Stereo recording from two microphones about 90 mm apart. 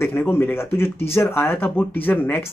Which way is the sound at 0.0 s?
25° left (ahead or behind).